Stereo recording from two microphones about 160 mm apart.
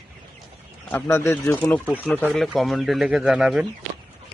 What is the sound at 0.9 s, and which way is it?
Speech, 15° left (ahead or behind).